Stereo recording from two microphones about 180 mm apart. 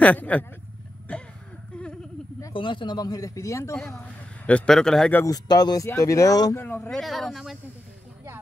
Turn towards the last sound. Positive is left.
turn(degrees=0)  # may be behind; listen again after turning